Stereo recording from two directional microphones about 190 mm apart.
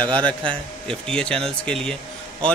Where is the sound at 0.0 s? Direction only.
25° right (ahead or behind).